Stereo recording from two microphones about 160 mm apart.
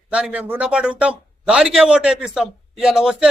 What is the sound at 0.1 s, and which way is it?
Speech, 5° right (ahead or behind).